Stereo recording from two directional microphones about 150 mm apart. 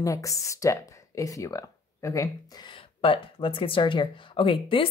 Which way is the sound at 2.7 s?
35° left (ahead or behind).